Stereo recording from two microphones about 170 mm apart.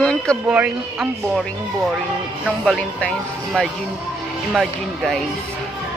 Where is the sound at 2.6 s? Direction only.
5° left (ahead or behind).